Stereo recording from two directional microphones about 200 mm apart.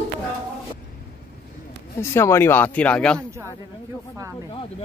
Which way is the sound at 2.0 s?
15° left (ahead or behind).